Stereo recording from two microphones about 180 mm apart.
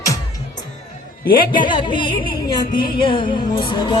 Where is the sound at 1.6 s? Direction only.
25° left (ahead or behind).